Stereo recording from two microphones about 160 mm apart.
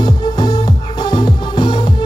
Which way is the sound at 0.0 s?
25° left (ahead or behind).